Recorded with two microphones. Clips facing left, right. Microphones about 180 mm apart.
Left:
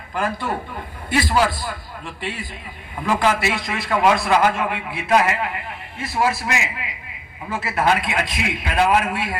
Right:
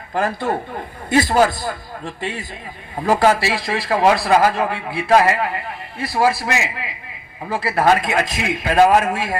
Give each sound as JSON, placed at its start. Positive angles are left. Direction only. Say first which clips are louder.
{"t": 0.1, "sound": "a man's voice", "louder": "right 4 dB", "side_deg": -40}